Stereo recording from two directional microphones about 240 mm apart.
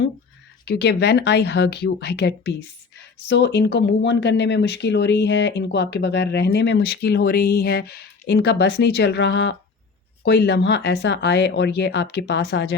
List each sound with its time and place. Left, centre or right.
0.6 s speech: left